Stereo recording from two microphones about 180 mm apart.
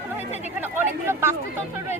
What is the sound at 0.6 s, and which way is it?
Speech, 15° right (ahead or behind).